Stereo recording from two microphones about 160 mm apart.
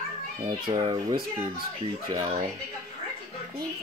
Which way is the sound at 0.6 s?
30° right (ahead or behind).